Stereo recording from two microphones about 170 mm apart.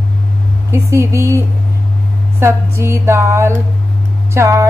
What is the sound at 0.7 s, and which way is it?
Speech, 15° right (ahead or behind).